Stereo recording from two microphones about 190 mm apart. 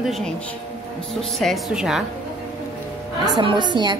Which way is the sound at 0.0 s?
Centre (ahead or behind).